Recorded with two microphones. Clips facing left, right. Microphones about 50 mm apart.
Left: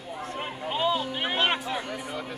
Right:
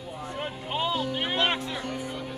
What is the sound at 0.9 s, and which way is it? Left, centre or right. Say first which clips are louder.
Speech: left 1 dB; centre.